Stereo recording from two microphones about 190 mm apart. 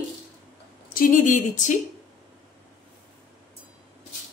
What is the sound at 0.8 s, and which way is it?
Speech, 45° left (ahead or behind).